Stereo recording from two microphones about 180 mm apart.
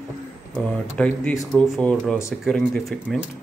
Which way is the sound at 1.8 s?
5° left (ahead or behind).